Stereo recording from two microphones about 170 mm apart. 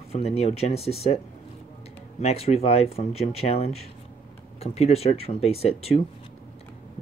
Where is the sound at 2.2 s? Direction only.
35° left (ahead or behind).